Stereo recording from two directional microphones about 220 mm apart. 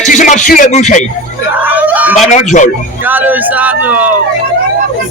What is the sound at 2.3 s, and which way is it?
Speech, 35° left (ahead or behind).